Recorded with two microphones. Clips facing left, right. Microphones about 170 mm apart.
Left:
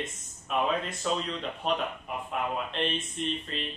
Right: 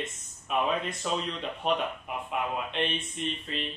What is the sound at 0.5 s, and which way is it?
Speech, 5° right (ahead or behind).